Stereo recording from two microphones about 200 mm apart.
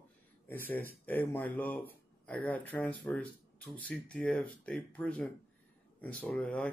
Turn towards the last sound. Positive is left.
turn(degrees=5)  # may be behind; listen again after turning